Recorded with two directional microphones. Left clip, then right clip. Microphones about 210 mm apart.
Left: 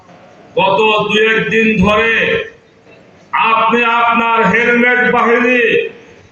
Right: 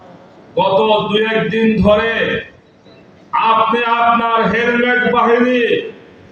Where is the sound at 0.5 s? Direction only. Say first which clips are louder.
Left 1 dB; 50° right (ahead or behind).